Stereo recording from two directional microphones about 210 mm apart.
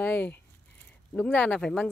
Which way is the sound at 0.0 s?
10° left (ahead or behind).